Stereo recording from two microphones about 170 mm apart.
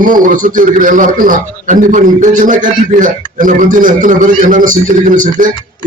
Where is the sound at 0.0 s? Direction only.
55° right (ahead or behind).